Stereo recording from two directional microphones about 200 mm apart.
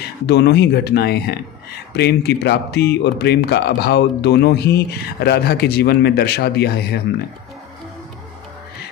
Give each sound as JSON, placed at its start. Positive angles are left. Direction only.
{"t": 0.3, "sound": "speech", "side_deg": 55}